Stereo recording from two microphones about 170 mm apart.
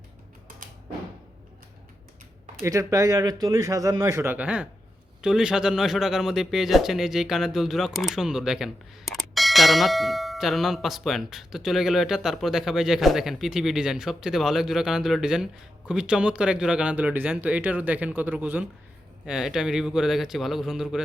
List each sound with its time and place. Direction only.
2.6 s a man's voice: 20° right (ahead or behind); by 21.0 s 5° right (ahead or behind)